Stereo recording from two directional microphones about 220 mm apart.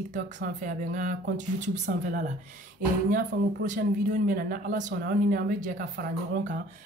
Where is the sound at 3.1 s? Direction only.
35° right (ahead or behind).